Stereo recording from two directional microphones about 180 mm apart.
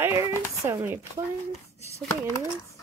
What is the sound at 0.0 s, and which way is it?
A woman's voice, 15° right (ahead or behind).